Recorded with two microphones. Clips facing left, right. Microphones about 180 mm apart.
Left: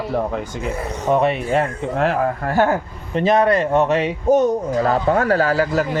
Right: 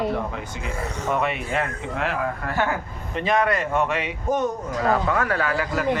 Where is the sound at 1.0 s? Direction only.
35° left (ahead or behind).